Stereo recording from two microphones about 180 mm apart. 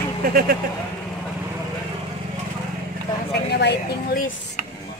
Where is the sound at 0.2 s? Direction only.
55° right (ahead or behind).